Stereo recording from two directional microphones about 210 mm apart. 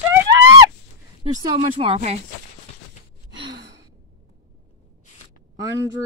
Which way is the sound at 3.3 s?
20° right (ahead or behind).